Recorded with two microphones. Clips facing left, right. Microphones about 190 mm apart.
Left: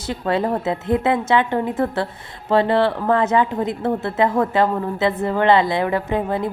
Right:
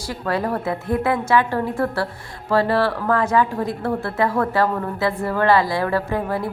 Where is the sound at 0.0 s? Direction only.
25° left (ahead or behind).